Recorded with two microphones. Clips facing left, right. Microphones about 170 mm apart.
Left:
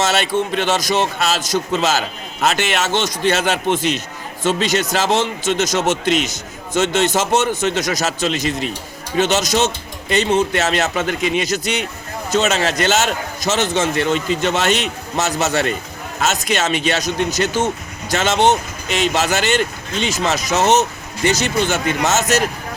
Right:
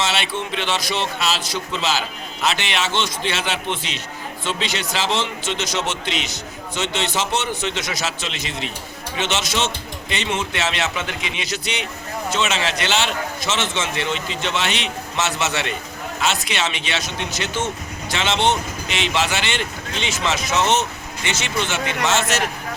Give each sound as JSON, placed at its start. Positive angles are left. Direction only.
{"t": 0.0, "sound": "a man's voice", "side_deg": 45}